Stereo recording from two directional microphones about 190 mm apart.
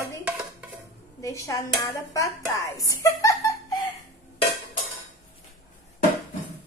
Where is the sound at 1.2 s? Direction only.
15° left (ahead or behind).